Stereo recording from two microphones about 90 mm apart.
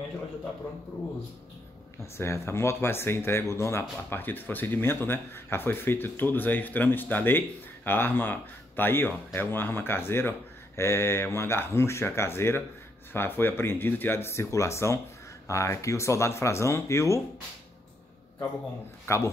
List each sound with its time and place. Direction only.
2.0 s speech: 30° left (ahead or behind)
19.1 s speech: 30° left (ahead or behind)